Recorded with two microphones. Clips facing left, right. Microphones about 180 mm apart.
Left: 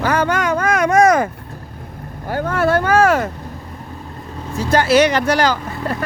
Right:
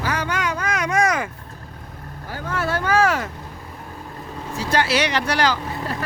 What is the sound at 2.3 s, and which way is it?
Speech, 55° left (ahead or behind).